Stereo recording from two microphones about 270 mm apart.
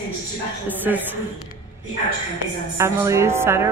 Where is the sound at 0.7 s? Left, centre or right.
Centre.